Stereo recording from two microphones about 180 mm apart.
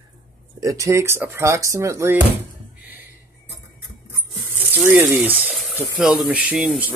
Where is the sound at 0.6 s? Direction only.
20° right (ahead or behind).